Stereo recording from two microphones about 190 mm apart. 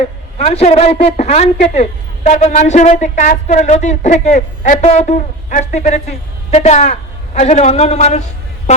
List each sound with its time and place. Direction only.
0.0 s a woman's voice: 35° left (ahead or behind)